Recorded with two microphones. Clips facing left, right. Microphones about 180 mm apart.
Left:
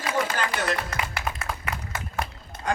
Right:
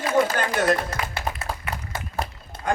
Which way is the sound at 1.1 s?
35° right (ahead or behind).